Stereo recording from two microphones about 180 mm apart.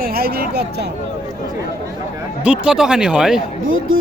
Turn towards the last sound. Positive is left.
turn(degrees=-90)